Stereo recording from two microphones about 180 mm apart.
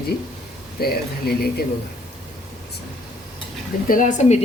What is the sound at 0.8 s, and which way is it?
Speech, 60° left (ahead or behind).